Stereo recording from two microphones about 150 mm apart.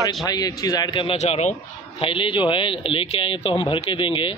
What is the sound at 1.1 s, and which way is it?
Speech, 45° left (ahead or behind).